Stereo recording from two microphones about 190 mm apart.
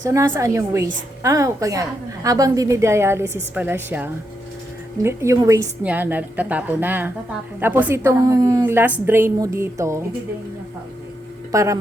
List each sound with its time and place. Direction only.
0.0 s a woman's voice: 15° right (ahead or behind)
11.5 s a woman's voice: 15° right (ahead or behind)